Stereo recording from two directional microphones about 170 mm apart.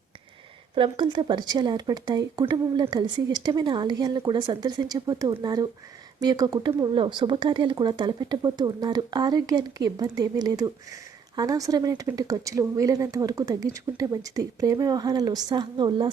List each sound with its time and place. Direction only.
0.8 s speech: 30° right (ahead or behind)